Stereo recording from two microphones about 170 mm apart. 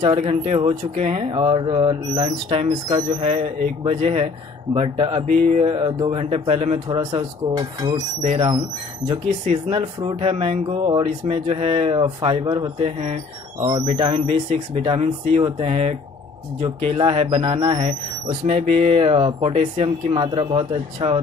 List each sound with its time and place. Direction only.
0.0 s speech: 35° right (ahead or behind)
5.8 s speech: 30° right (ahead or behind)
12.8 s speech: 45° right (ahead or behind)
13.6 s speech: 25° right (ahead or behind)